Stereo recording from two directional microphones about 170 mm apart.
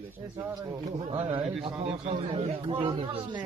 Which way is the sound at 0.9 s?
40° right (ahead or behind).